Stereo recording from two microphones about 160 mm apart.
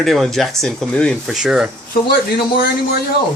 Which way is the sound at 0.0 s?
Centre (ahead or behind).